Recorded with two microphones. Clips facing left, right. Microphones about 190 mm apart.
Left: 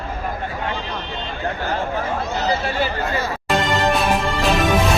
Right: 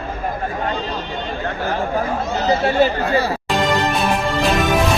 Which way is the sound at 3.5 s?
Centre (ahead or behind).